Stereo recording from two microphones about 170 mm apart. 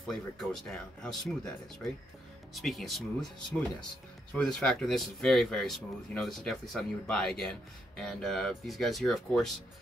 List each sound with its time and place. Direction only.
0.0 s speech: centre (ahead or behind)
2.5 s speech: centre (ahead or behind)